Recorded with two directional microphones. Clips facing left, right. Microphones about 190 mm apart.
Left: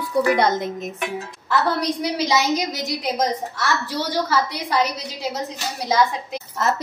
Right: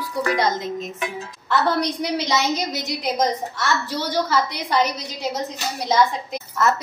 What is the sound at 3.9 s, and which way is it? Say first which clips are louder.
A child's voice: even; 10° left (ahead or behind).